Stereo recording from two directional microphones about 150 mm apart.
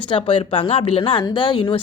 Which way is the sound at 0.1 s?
35° left (ahead or behind).